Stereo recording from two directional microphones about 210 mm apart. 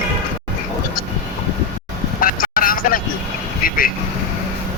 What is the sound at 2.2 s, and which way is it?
Vehicle, 40° left (ahead or behind).